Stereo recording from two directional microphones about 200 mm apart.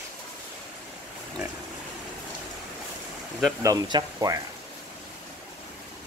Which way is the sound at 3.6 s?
20° right (ahead or behind).